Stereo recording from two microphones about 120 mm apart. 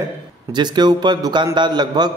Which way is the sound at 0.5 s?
35° right (ahead or behind).